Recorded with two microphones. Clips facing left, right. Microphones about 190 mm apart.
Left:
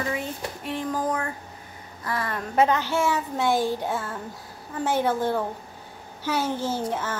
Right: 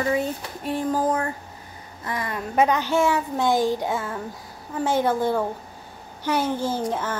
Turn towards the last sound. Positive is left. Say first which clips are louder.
# right 2 dB
turn(degrees=-10)  # may be behind; listen again after turning